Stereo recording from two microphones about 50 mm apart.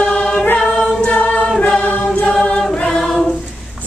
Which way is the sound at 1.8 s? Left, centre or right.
Left.